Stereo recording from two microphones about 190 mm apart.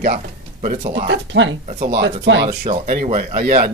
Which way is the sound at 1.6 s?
50° right (ahead or behind).